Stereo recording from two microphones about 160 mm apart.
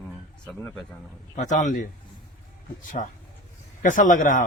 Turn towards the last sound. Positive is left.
turn(degrees=55)  # may be behind; listen again after turning